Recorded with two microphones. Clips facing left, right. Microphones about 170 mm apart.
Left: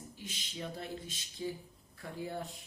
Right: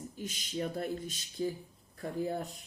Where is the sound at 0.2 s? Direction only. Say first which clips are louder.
Right 8 dB; 45° right (ahead or behind).